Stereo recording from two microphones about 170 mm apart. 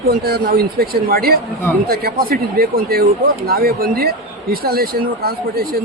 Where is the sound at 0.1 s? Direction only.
65° right (ahead or behind).